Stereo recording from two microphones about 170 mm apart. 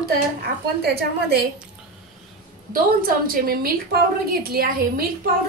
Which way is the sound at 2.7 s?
60° right (ahead or behind).